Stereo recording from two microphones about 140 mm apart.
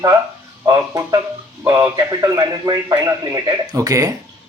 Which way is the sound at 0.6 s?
25° right (ahead or behind).